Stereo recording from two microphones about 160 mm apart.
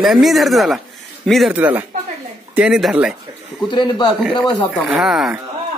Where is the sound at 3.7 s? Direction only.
30° left (ahead or behind).